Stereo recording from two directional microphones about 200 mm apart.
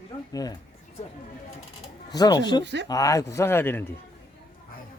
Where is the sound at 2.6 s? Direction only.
60° right (ahead or behind).